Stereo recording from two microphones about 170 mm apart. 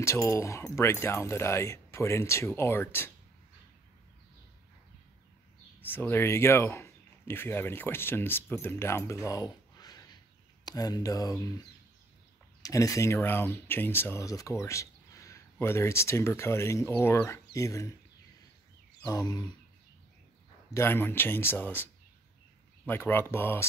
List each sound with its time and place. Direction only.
0.0 s speech: 15° left (ahead or behind)
5.8 s speech: 10° left (ahead or behind)
12.6 s speech: 20° left (ahead or behind)
19.0 s speech: 20° left (ahead or behind)
20.7 s speech: 15° left (ahead or behind)
22.8 s speech: 10° left (ahead or behind)